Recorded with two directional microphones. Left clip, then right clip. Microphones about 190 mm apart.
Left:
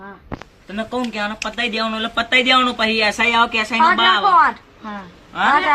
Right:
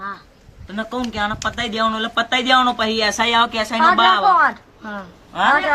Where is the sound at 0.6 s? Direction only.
15° right (ahead or behind).